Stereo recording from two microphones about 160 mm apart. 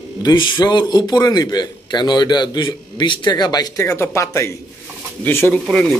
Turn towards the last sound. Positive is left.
turn(degrees=5)  # may be behind; listen again after turning